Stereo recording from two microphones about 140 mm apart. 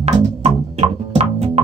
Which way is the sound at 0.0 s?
50° right (ahead or behind).